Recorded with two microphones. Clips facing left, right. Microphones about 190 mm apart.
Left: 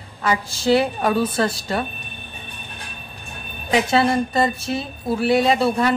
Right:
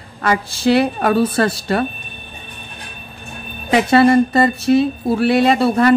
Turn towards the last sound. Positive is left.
turn(degrees=-65)  # may be behind; listen again after turning